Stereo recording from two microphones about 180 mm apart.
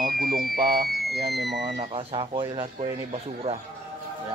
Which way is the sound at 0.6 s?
55° right (ahead or behind).